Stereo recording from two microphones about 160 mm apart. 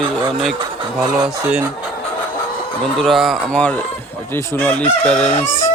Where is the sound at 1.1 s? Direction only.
5° right (ahead or behind).